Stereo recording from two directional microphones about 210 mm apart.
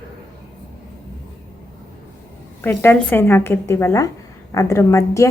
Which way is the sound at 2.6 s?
10° left (ahead or behind).